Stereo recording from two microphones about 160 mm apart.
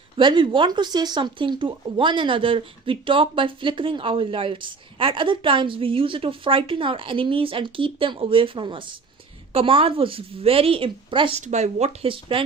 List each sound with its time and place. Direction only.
0.2 s speech: 30° right (ahead or behind)
11.3 s speech: 45° right (ahead or behind)